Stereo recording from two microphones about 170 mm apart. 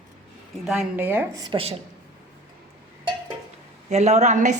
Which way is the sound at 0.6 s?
5° right (ahead or behind).